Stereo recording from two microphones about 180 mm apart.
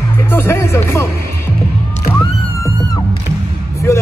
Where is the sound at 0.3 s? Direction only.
15° left (ahead or behind).